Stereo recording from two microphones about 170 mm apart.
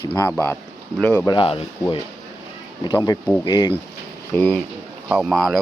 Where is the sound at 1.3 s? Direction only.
30° left (ahead or behind).